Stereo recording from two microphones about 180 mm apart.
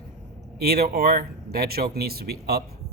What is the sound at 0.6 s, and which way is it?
Speech, 60° right (ahead or behind).